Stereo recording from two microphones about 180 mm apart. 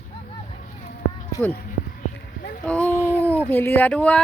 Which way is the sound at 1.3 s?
10° left (ahead or behind).